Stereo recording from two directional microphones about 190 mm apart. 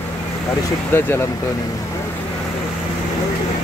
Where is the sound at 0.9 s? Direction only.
10° left (ahead or behind).